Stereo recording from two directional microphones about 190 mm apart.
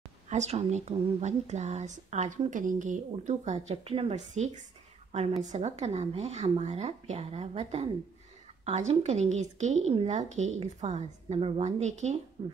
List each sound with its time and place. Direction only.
0.3 s a woman's voice: 35° right (ahead or behind)